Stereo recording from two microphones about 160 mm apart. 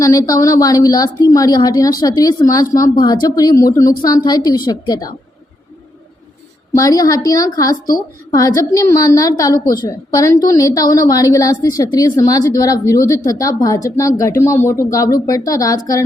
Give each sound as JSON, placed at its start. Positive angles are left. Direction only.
{"t": 0.0, "sound": "a woman's voice", "side_deg": 20}
{"t": 6.7, "sound": "a woman's voice", "side_deg": 20}